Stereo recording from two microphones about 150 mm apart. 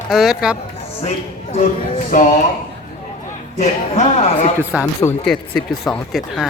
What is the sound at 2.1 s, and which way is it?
Speech, 70° left (ahead or behind).